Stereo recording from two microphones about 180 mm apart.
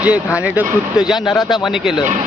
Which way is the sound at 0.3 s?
5° right (ahead or behind).